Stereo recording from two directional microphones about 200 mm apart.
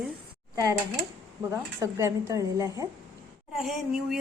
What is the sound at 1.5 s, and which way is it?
Speech, 15° right (ahead or behind).